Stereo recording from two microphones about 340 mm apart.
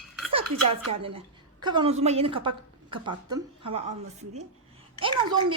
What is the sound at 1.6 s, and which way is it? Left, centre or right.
A woman's voice, centre.